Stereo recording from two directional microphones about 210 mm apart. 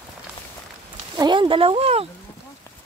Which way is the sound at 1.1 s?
20° right (ahead or behind).